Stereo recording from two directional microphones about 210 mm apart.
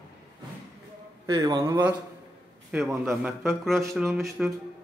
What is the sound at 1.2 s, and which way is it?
Speech, 20° right (ahead or behind).